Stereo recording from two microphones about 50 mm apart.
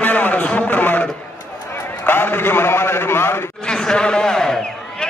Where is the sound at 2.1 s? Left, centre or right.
Left.